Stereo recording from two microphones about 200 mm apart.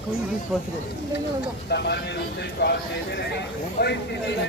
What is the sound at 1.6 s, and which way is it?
Speech, 55° left (ahead or behind).